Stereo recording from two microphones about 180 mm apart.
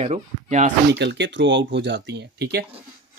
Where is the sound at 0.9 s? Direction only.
75° right (ahead or behind).